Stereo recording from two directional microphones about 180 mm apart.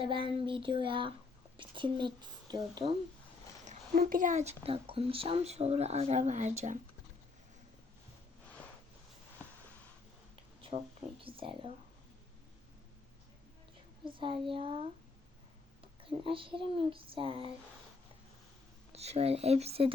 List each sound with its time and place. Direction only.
0.0 s speech: 30° right (ahead or behind)
3.6 s speech: 45° right (ahead or behind)
11.2 s speech: 30° right (ahead or behind)
14.0 s speech: 30° right (ahead or behind)
16.0 s speech: 30° right (ahead or behind)
18.9 s speech: 35° right (ahead or behind)